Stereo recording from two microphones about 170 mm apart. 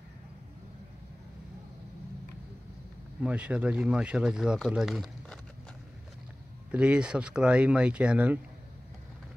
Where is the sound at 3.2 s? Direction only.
10° right (ahead or behind).